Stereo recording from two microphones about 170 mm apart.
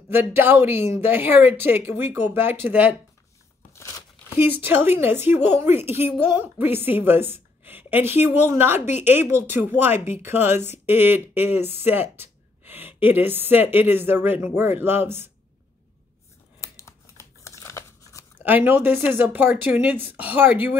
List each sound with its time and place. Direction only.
0.1 s speech: 15° right (ahead or behind)
4.4 s speech: 10° right (ahead or behind)
16.6 s a sound: 20° left (ahead or behind)
18.4 s speech: 10° right (ahead or behind)